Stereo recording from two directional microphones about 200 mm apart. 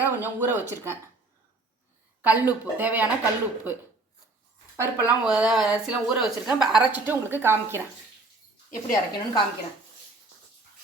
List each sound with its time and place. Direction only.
0.0 s speech: 10° right (ahead or behind)
2.2 s speech: 10° right (ahead or behind)
4.8 s speech: 10° right (ahead or behind)
8.7 s speech: 15° left (ahead or behind)